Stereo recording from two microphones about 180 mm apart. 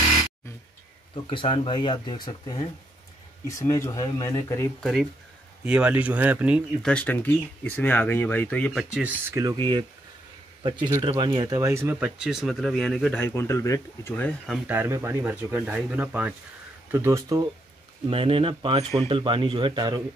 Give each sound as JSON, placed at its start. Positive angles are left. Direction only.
{"t": 1.3, "sound": "speech", "side_deg": 30}
{"t": 4.7, "sound": "speech", "side_deg": 0}
{"t": 6.9, "sound": "speech", "side_deg": 10}
{"t": 14.7, "sound": "speech", "side_deg": -10}
{"t": 18.1, "sound": "speech", "side_deg": -30}